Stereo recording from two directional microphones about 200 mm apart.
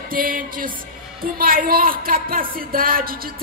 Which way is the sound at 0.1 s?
45° right (ahead or behind).